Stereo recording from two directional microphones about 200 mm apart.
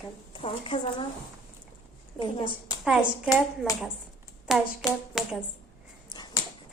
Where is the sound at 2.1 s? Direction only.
25° left (ahead or behind).